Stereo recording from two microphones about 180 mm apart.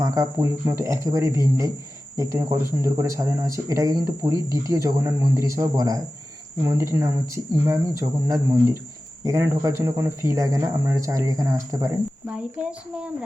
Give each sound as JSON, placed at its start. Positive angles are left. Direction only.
{"t": 0.0, "sound": "speech", "side_deg": -20}
{"t": 12.4, "sound": "a child's voice", "side_deg": -5}